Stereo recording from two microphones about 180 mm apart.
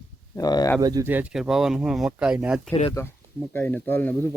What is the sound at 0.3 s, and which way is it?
Speech, 20° left (ahead or behind).